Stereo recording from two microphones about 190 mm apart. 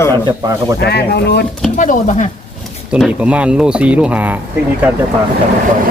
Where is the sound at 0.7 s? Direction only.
60° left (ahead or behind).